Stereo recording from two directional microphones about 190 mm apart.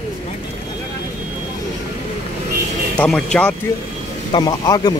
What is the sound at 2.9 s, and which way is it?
Speech, 5° left (ahead or behind).